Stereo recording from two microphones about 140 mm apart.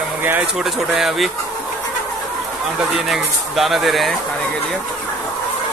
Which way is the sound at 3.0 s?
Centre (ahead or behind).